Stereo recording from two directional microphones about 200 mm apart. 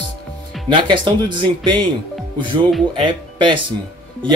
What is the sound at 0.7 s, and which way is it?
A man's voice, 25° right (ahead or behind).